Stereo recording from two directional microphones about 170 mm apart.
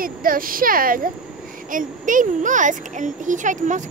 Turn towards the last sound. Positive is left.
turn(degrees=-45)  # may be behind; listen again after turning